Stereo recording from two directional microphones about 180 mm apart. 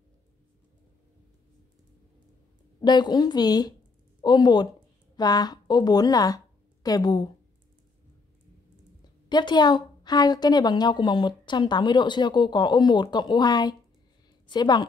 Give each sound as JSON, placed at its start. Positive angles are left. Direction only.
{"t": 2.8, "sound": "a woman's voice", "side_deg": 25}
{"t": 9.3, "sound": "speech", "side_deg": 25}